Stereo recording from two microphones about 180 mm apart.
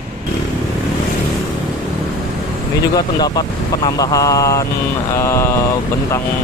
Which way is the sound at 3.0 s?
25° left (ahead or behind).